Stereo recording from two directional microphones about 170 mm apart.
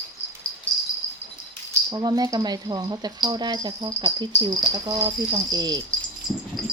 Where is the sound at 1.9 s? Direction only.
20° right (ahead or behind).